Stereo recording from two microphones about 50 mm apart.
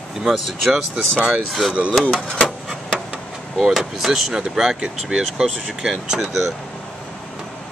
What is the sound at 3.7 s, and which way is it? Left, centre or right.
Speech, centre.